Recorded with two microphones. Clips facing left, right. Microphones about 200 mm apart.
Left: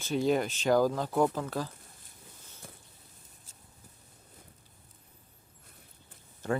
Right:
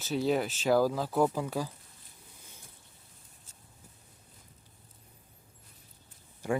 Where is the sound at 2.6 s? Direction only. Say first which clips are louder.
Left 8 dB; 70° left (ahead or behind).